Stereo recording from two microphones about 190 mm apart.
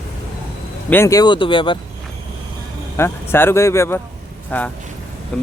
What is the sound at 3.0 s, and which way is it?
Speech, 10° left (ahead or behind).